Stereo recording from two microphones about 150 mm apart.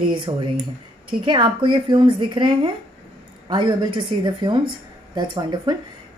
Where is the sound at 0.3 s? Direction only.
30° right (ahead or behind).